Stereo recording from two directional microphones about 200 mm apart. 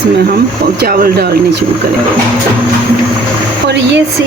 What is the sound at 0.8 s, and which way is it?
Speech, 50° right (ahead or behind).